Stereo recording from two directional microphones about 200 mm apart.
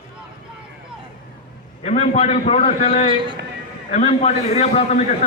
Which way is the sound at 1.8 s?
30° left (ahead or behind).